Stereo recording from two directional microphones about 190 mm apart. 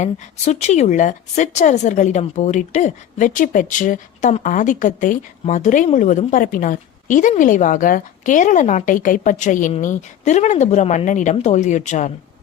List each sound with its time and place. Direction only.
0.0 s a woman's voice: 35° left (ahead or behind)